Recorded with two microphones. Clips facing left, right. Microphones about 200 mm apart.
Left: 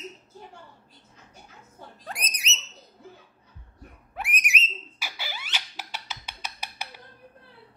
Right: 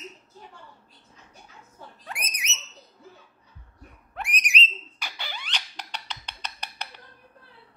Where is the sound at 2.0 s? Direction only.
35° left (ahead or behind).